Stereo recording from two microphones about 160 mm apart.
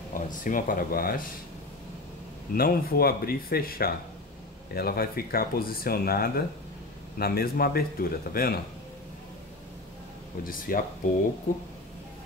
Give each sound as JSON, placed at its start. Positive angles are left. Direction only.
{"t": 0.1, "sound": "speech", "side_deg": 55}
{"t": 2.5, "sound": "speech", "side_deg": 70}
{"t": 10.4, "sound": "speech", "side_deg": 60}